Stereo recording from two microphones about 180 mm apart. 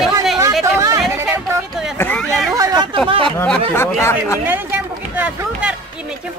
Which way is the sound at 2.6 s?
20° right (ahead or behind).